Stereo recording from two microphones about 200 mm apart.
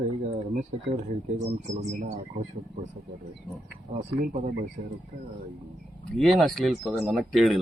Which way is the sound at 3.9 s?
35° right (ahead or behind).